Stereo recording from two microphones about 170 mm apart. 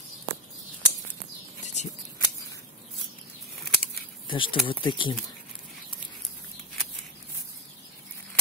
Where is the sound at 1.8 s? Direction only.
45° left (ahead or behind).